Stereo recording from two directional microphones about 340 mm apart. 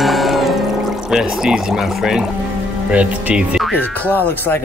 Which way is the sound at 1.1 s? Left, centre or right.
Centre.